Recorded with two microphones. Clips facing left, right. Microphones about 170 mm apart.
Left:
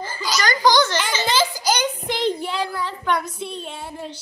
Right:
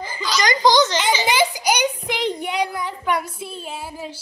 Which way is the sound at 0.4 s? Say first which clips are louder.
Right 2 dB; 20° right (ahead or behind).